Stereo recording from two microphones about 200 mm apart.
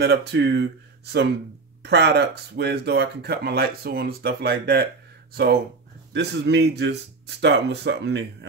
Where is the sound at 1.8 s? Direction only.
55° right (ahead or behind).